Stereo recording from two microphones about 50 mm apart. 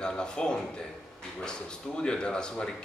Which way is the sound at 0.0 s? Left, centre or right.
Centre.